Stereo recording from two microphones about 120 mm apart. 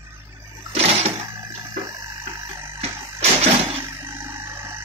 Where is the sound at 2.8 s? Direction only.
55° right (ahead or behind).